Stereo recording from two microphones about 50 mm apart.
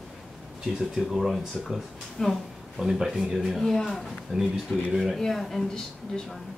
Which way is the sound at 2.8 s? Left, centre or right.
Centre.